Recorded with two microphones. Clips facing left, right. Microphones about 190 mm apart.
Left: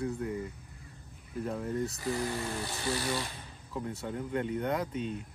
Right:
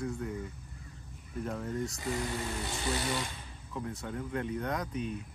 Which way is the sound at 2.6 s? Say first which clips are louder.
Even; 20° right (ahead or behind).